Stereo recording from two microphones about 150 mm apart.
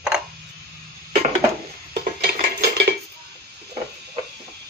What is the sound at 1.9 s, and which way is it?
Dishes, 90° right.